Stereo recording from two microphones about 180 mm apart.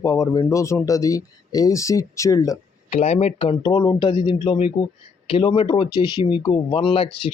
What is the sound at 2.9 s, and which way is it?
Speech, 35° left (ahead or behind).